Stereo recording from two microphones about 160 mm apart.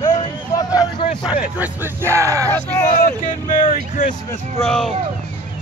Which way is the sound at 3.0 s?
55° left (ahead or behind).